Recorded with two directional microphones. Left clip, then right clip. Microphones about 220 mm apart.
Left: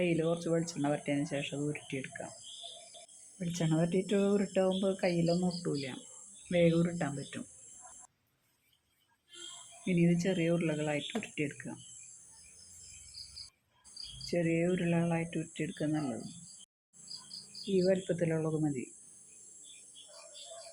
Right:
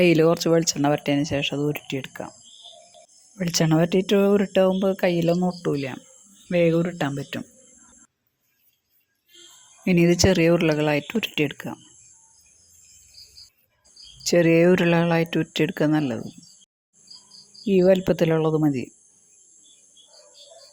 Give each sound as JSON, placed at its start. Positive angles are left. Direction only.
{"t": 0.0, "sound": "speech", "side_deg": -50}
{"t": 3.3, "sound": "speech", "side_deg": -45}
{"t": 9.8, "sound": "speech", "side_deg": -50}
{"t": 14.3, "sound": "speech", "side_deg": -50}
{"t": 17.7, "sound": "speech", "side_deg": -40}